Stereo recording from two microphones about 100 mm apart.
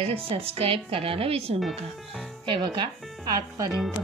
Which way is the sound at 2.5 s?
45° right (ahead or behind).